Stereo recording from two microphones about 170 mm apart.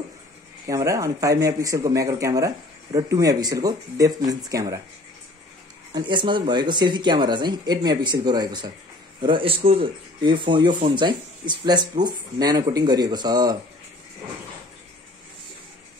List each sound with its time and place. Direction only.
0.7 s speech: 20° right (ahead or behind)
5.9 s a man's voice: 25° right (ahead or behind)